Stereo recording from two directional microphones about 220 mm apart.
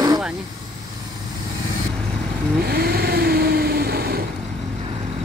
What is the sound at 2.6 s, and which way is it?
Vehicle, 45° right (ahead or behind).